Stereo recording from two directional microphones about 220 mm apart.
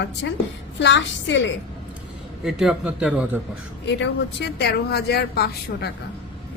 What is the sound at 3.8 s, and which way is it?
A woman's voice, 50° left (ahead or behind).